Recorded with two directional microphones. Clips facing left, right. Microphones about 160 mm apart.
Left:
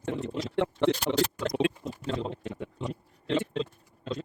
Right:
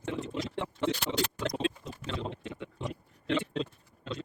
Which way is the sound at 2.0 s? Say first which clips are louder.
Left 6 dB; 40° left (ahead or behind).